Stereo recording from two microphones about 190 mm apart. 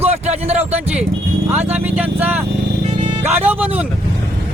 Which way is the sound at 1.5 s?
10° right (ahead or behind).